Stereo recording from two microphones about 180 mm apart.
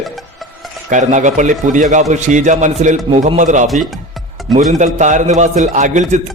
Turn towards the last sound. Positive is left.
turn(degrees=-40)  # may be behind; listen again after turning